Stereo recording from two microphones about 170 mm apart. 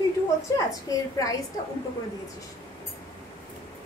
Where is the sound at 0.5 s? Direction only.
20° left (ahead or behind).